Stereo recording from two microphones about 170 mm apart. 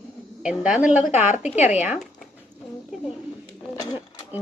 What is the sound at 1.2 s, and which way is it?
Speech, 45° left (ahead or behind).